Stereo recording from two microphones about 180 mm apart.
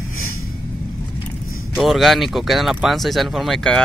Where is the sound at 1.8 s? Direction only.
Centre (ahead or behind).